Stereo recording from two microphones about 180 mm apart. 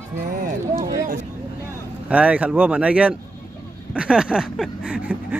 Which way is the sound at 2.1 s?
5° right (ahead or behind).